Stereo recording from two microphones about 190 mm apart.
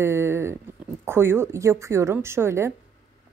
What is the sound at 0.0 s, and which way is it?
A woman's voice, 15° right (ahead or behind).